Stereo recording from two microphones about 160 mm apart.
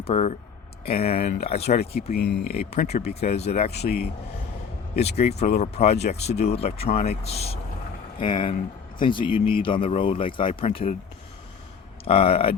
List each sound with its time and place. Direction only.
0.0 s speech: 40° left (ahead or behind)
1.8 s a man's voice: 80° left
2.6 s speech: 40° left (ahead or behind)
3.8 s a man's voice: 80° left
4.9 s speech: 40° left (ahead or behind)
12.0 s speech: 35° left (ahead or behind)